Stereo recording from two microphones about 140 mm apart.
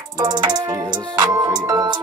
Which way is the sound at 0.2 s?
30° right (ahead or behind).